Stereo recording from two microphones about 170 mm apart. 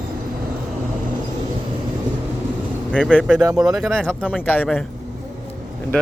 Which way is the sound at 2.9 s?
5° right (ahead or behind).